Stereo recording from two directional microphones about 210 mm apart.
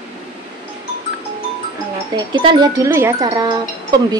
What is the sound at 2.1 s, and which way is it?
A woman's voice, 20° right (ahead or behind).